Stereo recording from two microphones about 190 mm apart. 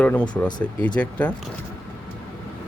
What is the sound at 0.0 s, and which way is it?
Speech, 10° left (ahead or behind).